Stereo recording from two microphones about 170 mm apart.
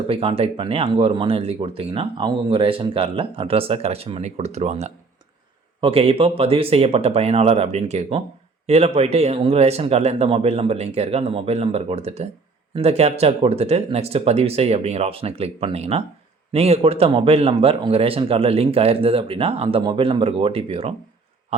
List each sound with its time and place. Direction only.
0.1 s speech: 35° right (ahead or behind)